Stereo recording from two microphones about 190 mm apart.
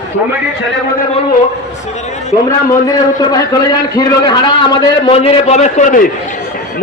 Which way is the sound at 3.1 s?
20° left (ahead or behind).